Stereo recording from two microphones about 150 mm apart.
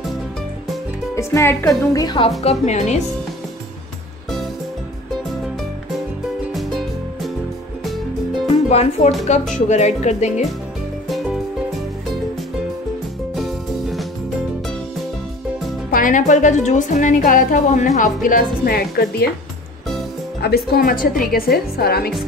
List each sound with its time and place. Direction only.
1.1 s speech: 20° left (ahead or behind)
2.0 s a woman's voice: 30° left (ahead or behind)
2.6 s speech: 50° left (ahead or behind)
8.6 s speech: 45° left (ahead or behind)
11.1 s music: centre (ahead or behind)
13.4 s music: centre (ahead or behind)
15.9 s a woman's voice: 60° left (ahead or behind); by 19.3 s 90° left
20.4 s speech: 90° left; by 21.1 s 75° left (ahead or behind)
21.3 s a woman's voice: 85° left